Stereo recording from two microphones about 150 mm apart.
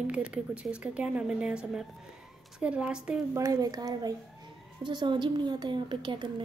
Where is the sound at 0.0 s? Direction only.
5° right (ahead or behind).